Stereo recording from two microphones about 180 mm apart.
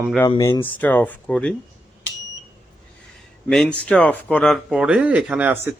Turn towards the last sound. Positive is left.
turn(degrees=-10)  # may be behind; listen again after turning